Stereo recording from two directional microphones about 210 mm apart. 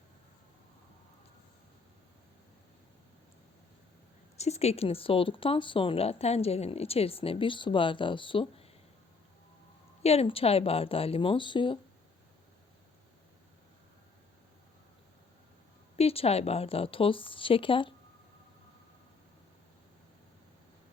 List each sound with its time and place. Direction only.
4.4 s speech: 30° left (ahead or behind)
10.0 s speech: 30° left (ahead or behind)
16.0 s speech: 30° left (ahead or behind)